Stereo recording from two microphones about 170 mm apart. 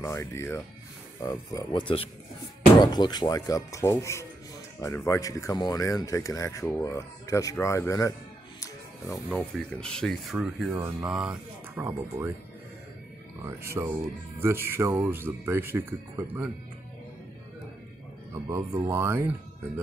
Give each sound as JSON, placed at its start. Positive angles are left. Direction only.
{"t": 0.0, "sound": "speech", "side_deg": 15}
{"t": 8.5, "sound": "music", "side_deg": 20}
{"t": 9.3, "sound": "speech", "side_deg": 5}
{"t": 13.6, "sound": "speech", "side_deg": -15}
{"t": 18.3, "sound": "speech", "side_deg": -15}